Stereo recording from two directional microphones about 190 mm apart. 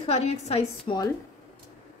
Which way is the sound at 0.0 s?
35° left (ahead or behind).